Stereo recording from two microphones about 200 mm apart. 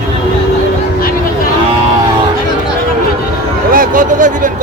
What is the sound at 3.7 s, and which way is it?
Speech, 45° right (ahead or behind).